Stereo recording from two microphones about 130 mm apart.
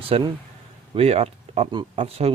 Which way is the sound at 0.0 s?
45° right (ahead or behind).